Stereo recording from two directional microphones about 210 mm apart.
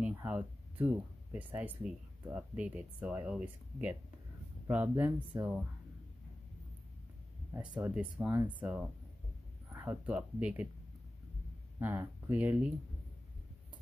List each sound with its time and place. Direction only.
0.0 s speech: 5° right (ahead or behind)
7.7 s speech: 5° right (ahead or behind)
11.8 s speech: 10° right (ahead or behind)